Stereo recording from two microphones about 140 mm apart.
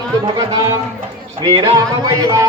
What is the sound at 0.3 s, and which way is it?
Speech, 25° right (ahead or behind).